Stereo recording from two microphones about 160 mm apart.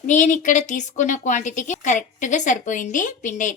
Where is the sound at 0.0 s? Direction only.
50° left (ahead or behind).